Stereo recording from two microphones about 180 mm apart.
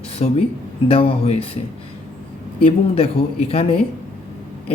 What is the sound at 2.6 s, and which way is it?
Speech, 35° left (ahead or behind).